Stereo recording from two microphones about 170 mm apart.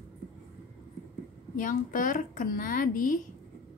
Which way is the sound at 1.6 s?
50° left (ahead or behind).